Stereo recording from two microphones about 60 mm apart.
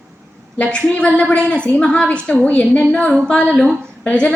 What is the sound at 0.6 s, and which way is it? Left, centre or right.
A woman's voice, centre.